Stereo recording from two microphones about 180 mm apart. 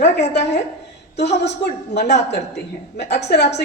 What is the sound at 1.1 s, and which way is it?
A woman's voice, 70° left (ahead or behind).